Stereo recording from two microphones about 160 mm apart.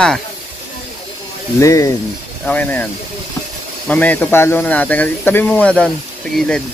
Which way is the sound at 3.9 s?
10° left (ahead or behind).